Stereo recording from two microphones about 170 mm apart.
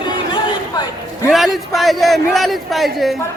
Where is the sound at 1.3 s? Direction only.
Centre (ahead or behind).